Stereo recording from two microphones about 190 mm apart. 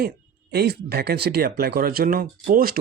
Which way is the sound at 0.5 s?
55° right (ahead or behind).